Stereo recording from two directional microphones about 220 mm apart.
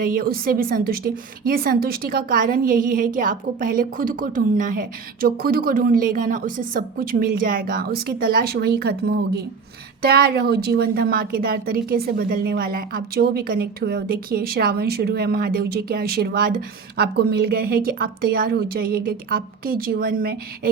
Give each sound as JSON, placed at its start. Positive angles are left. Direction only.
{"t": 0.0, "sound": "a woman's voice", "side_deg": -40}